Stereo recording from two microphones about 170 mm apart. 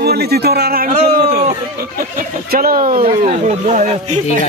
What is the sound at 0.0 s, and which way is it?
A man's voice, 65° right (ahead or behind).